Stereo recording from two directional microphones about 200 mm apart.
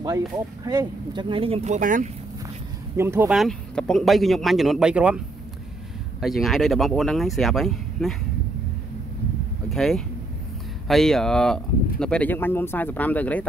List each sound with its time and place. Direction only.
0.7 s speech: 20° right (ahead or behind); by 2.0 s 40° right (ahead or behind)
3.0 s speech: 10° right (ahead or behind)
6.2 s speech: centre (ahead or behind)
9.7 s speech: centre (ahead or behind)